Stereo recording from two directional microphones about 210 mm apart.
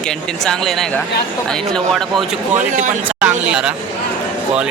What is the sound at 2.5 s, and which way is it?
Speech, 35° right (ahead or behind).